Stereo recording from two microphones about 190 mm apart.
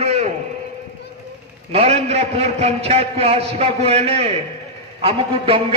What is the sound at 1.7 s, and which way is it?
A man's voice, 35° right (ahead or behind).